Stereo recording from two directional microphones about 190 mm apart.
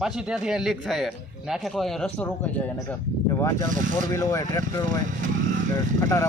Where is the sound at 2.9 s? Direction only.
15° left (ahead or behind).